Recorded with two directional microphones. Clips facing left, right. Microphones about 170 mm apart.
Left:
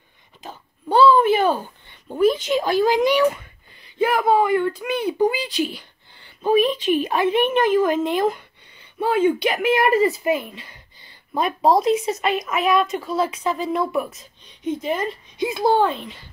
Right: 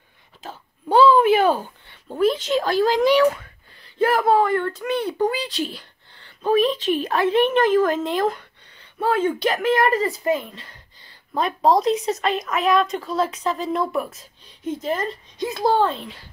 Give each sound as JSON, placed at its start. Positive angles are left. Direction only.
{"t": 0.4, "sound": "a sound", "side_deg": -10}
{"t": 3.0, "sound": "speech", "side_deg": 0}
{"t": 15.6, "sound": "a child's voice", "side_deg": 20}